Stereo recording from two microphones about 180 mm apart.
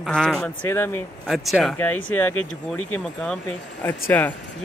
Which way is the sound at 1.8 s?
10° left (ahead or behind).